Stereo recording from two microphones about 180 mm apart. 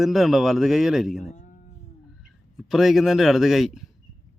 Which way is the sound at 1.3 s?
45° left (ahead or behind).